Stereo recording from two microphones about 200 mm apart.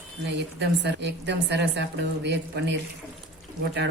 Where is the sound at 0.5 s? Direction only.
60° right (ahead or behind).